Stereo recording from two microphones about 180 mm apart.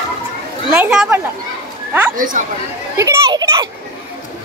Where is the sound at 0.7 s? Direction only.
5° right (ahead or behind).